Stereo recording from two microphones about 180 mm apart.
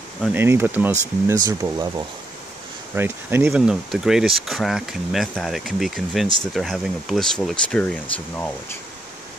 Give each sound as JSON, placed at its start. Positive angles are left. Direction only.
{"t": 0.3, "sound": "speech", "side_deg": -10}